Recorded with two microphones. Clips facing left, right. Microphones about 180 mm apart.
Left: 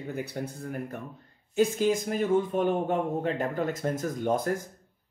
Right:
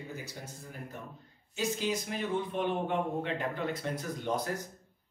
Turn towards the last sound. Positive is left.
turn(degrees=50)  # may be behind; listen again after turning